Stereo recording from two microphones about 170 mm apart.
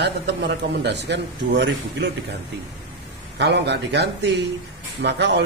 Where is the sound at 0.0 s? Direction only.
90° right.